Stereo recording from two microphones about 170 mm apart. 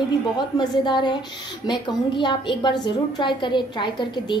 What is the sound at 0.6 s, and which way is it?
A woman's voice, 25° left (ahead or behind).